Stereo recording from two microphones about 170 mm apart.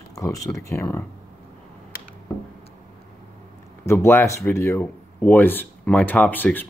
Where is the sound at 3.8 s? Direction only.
15° left (ahead or behind).